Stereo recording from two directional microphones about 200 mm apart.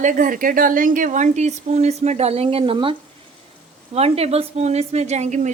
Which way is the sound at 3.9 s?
30° right (ahead or behind).